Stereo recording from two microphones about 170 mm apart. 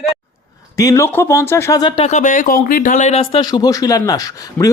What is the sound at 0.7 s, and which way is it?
Speech, 20° left (ahead or behind).